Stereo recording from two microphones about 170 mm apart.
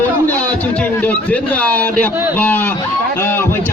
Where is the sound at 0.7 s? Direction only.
10° left (ahead or behind).